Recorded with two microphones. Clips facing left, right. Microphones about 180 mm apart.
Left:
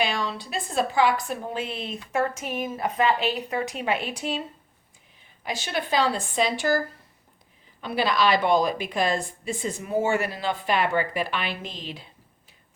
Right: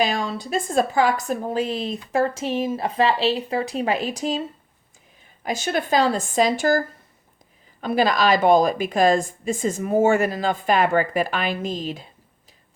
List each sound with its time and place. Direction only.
0.0 s a woman's voice: 45° right (ahead or behind)
5.5 s speech: 45° right (ahead or behind)